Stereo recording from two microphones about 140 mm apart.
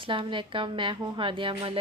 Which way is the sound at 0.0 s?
35° right (ahead or behind).